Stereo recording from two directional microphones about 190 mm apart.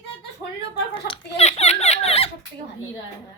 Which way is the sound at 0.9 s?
30° left (ahead or behind).